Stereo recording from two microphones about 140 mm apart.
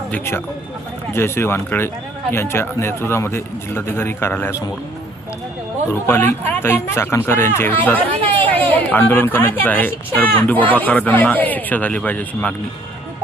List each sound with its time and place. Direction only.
0.1 s speech: 15° left (ahead or behind)
5.9 s speech: 15° left (ahead or behind)